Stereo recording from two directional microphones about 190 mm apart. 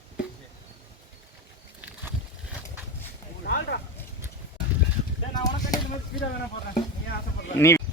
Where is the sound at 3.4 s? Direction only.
65° left (ahead or behind).